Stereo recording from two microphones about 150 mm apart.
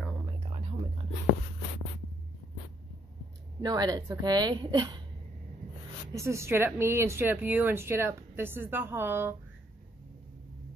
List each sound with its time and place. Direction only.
0.5 s a sound: 40° right (ahead or behind)
3.6 s a woman's voice: 25° right (ahead or behind)
6.1 s speech: 20° right (ahead or behind)